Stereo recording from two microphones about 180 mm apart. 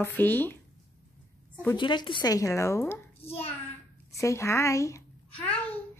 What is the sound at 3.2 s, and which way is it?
Hands, 35° left (ahead or behind).